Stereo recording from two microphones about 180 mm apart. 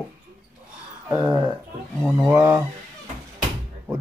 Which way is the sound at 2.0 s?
10° right (ahead or behind).